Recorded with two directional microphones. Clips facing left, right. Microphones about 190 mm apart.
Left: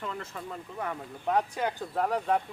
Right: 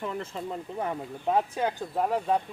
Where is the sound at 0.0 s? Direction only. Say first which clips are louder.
Right 4 dB; 20° right (ahead or behind).